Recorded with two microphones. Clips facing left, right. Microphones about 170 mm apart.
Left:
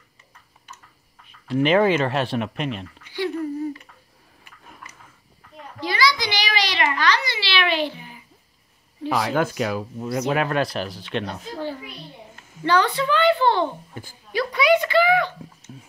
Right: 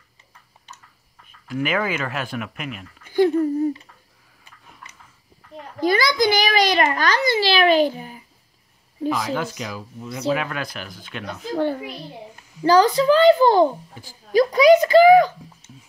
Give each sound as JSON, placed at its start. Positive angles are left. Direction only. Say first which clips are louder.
{"t": 1.5, "sound": "speech", "louder": "left 6 dB", "side_deg": 30}
{"t": 3.0, "sound": "a sound", "louder": "right 11 dB", "side_deg": -45}
{"t": 5.8, "sound": "a child's voice", "louder": "right 4 dB", "side_deg": -50}
{"t": 9.3, "sound": "speech", "louder": "left 4 dB", "side_deg": 50}
{"t": 10.3, "sound": "speech", "louder": "left 6 dB", "side_deg": 40}
{"t": 11.5, "sound": "a child's voice", "louder": "right 9 dB", "side_deg": -55}
{"t": 12.6, "sound": "a child's voice", "louder": "right 6 dB", "side_deg": -40}
{"t": 14.0, "sound": "speech", "louder": "left 5 dB", "side_deg": 55}
{"t": 14.3, "sound": "a child's voice", "louder": "right 6 dB", "side_deg": -40}